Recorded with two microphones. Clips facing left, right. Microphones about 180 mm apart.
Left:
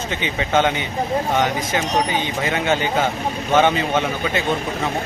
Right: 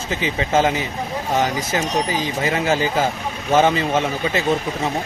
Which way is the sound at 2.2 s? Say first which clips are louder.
Right 1 dB; 30° right (ahead or behind).